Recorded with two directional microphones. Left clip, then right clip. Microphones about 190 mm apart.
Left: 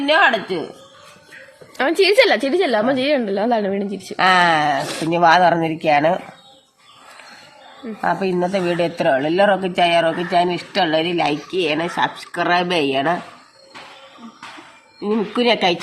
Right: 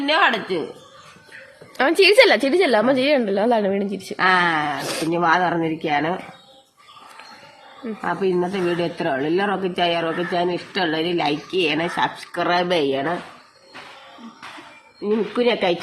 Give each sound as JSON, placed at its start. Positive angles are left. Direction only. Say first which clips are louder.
{"t": 0.0, "sound": "a woman's voice", "louder": "left 3 dB", "side_deg": 15}
{"t": 1.8, "sound": "a woman's voice", "louder": "right 1 dB", "side_deg": -5}
{"t": 4.2, "sound": "speech", "louder": "left 4 dB", "side_deg": 50}
{"t": 4.8, "sound": "a woman's voice", "louder": "left 2 dB", "side_deg": 0}
{"t": 5.0, "sound": "speech", "louder": "left 6 dB", "side_deg": 40}
{"t": 8.0, "sound": "speech", "louder": "left 2 dB", "side_deg": 45}
{"t": 11.5, "sound": "speech", "louder": "left 1 dB", "side_deg": 15}
{"t": 15.0, "sound": "speech", "louder": "left 2 dB", "side_deg": 45}